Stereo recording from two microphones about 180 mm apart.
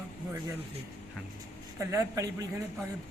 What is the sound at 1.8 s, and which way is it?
Speech, 15° right (ahead or behind).